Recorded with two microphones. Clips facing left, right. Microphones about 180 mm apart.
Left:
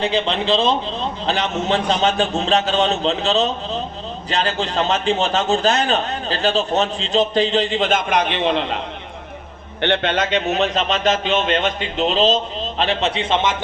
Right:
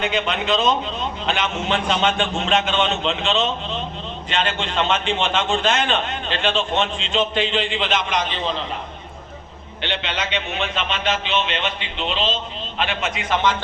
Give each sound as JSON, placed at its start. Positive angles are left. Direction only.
{"t": 0.0, "sound": "a man's voice", "side_deg": 30}
{"t": 9.8, "sound": "a man's voice", "side_deg": 55}